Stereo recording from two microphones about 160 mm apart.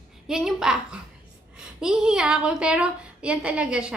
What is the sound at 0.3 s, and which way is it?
A woman's voice, 5° right (ahead or behind).